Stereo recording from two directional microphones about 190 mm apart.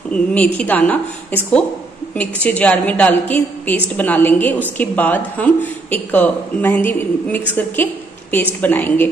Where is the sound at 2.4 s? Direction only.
5° left (ahead or behind).